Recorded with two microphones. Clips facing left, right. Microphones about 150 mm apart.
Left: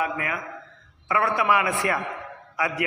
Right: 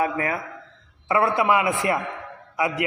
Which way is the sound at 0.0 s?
35° right (ahead or behind).